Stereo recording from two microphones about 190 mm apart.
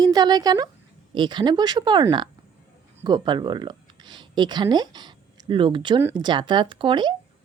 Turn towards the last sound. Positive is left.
turn(degrees=-25)  # may be behind; listen again after turning